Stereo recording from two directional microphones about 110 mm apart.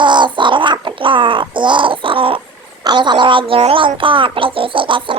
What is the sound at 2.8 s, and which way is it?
Speech, 40° right (ahead or behind).